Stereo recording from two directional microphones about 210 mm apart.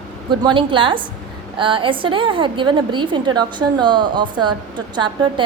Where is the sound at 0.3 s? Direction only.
20° right (ahead or behind).